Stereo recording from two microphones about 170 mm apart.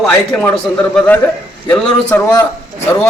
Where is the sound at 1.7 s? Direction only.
15° left (ahead or behind).